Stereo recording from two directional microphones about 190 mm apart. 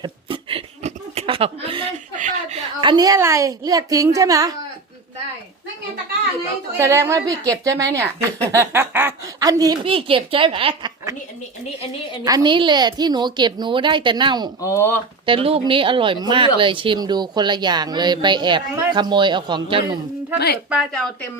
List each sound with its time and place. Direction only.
0.0 s chuckle: 25° right (ahead or behind)
2.1 s a sound: 40° right (ahead or behind)
2.8 s a woman's voice: 20° right (ahead or behind)
6.7 s a woman's voice: 15° right (ahead or behind)
12.2 s speech: 20° right (ahead or behind)
14.6 s speech: 15° left (ahead or behind)
15.3 s speech: 30° right (ahead or behind)
20.7 s a woman's voice: centre (ahead or behind)